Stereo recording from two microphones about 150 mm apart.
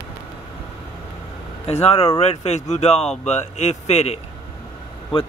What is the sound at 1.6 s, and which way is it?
A man's voice, 45° left (ahead or behind).